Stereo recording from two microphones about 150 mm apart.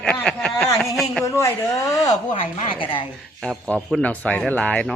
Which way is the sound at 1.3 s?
20° left (ahead or behind).